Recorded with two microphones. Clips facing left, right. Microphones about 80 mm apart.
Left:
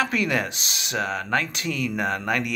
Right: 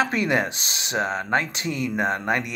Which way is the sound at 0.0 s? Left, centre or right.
Right.